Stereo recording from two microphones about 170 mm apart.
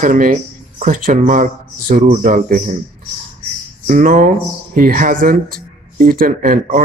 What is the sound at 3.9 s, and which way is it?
Speech, 50° right (ahead or behind).